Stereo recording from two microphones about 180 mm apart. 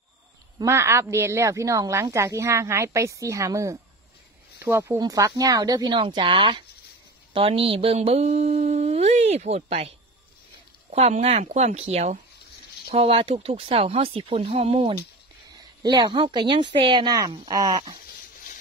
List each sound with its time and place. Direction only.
0.6 s a woman's voice: 15° right (ahead or behind)
7.3 s mantra: 30° right (ahead or behind)
15.5 s a woman's voice: 25° right (ahead or behind)
18.0 s a sound: 50° left (ahead or behind)